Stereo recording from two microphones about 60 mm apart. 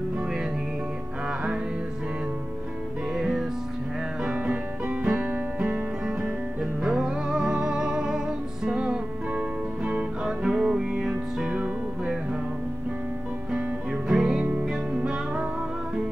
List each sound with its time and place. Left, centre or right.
3.2 s music: centre
4.2 s music: right
6.0 s music: centre
10.2 s music: centre
11.5 s music: right
13.5 s music: centre